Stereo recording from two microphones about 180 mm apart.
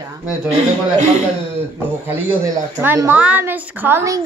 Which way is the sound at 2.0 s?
10° right (ahead or behind).